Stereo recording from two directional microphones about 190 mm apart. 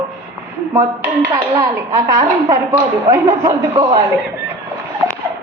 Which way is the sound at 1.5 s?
15° right (ahead or behind).